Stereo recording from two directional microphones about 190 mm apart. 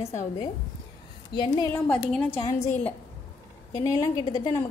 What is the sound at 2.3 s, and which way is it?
Speech, 25° left (ahead or behind).